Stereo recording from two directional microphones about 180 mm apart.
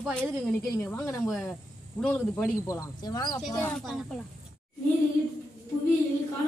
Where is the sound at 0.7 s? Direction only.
15° left (ahead or behind).